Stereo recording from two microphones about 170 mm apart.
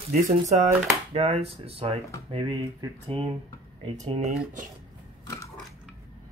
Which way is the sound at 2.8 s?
20° right (ahead or behind).